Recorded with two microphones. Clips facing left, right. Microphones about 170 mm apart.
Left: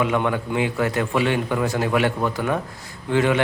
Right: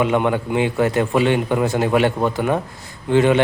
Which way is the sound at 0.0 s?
25° right (ahead or behind).